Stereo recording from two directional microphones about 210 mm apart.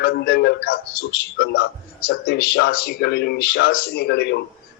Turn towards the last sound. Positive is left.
turn(degrees=50)  # may be behind; listen again after turning